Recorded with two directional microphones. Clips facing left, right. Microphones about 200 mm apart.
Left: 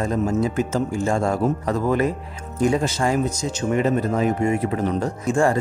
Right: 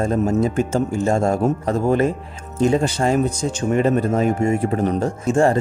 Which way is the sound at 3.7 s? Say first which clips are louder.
Right 3 dB; 45° right (ahead or behind).